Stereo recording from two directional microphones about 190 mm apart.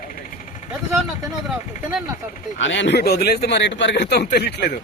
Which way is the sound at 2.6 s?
70° left (ahead or behind).